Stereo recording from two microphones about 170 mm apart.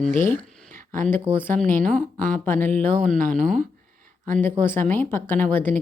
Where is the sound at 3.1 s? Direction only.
50° right (ahead or behind).